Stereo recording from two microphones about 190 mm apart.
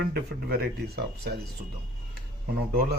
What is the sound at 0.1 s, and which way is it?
Speech, 55° right (ahead or behind).